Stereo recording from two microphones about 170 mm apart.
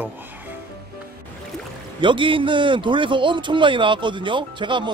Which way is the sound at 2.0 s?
30° right (ahead or behind).